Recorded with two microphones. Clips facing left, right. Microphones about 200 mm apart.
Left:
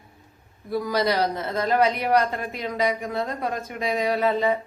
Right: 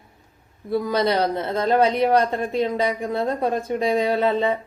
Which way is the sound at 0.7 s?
25° right (ahead or behind).